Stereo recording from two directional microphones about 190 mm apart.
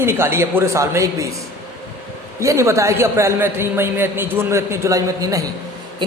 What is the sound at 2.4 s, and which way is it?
A woman's voice, 15° right (ahead or behind).